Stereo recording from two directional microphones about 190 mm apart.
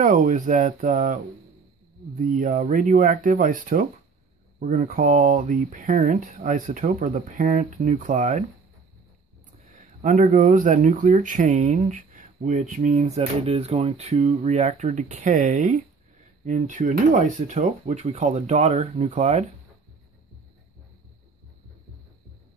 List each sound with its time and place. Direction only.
0.0 s speech: 45° right (ahead or behind)
10.0 s speech: 40° right (ahead or behind)